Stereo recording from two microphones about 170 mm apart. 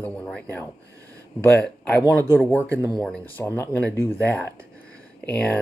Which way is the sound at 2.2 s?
15° left (ahead or behind).